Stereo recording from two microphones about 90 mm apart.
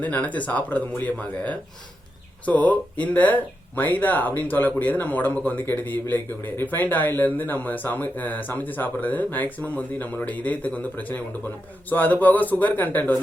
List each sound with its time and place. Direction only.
0.0 s speech: 15° left (ahead or behind)
2.4 s speech: 15° left (ahead or behind)